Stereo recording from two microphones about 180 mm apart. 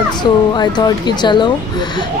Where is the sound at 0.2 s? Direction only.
25° left (ahead or behind).